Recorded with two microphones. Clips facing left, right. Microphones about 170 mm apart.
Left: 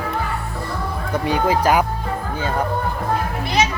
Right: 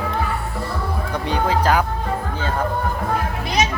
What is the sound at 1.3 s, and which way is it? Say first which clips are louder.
Speech: left 2 dB; 10° left (ahead or behind).